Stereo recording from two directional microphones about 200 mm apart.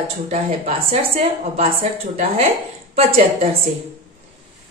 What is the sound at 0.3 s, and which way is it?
A woman's voice, 30° right (ahead or behind).